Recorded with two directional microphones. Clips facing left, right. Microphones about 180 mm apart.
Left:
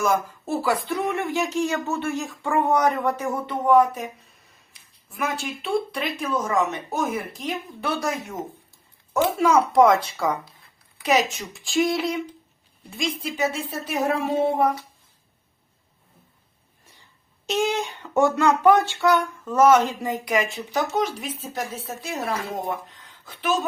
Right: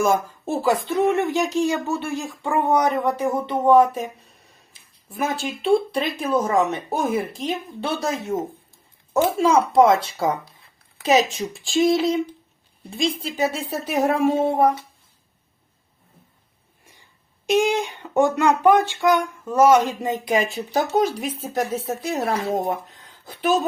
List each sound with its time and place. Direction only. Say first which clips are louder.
0.0 s speech: right 3 dB; 25° right (ahead or behind)
5.0 s speech: right 3 dB; 30° right (ahead or behind)
9.4 s a woman's voice: right 1 dB; 25° right (ahead or behind)
16.8 s a woman's voice: right 1 dB; 15° right (ahead or behind); by 23.6 s 40° right (ahead or behind)